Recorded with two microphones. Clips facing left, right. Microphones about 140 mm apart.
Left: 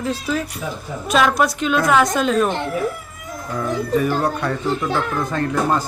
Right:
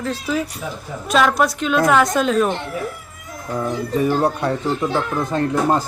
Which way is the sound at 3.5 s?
25° right (ahead or behind).